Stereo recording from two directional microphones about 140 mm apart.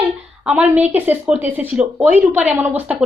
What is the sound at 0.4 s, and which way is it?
Speech, 10° right (ahead or behind).